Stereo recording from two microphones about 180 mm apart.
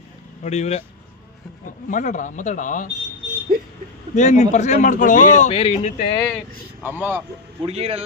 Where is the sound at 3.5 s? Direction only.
55° right (ahead or behind).